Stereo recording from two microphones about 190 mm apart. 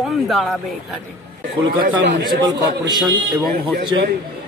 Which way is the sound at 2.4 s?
20° right (ahead or behind).